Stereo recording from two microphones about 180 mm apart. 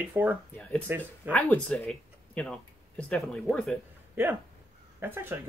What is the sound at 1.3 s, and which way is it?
Speech, 5° left (ahead or behind).